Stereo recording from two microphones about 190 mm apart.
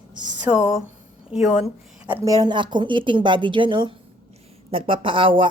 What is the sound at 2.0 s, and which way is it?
A woman's voice, 15° right (ahead or behind).